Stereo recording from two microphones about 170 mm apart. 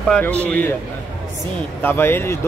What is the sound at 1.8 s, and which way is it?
Speech, 10° left (ahead or behind).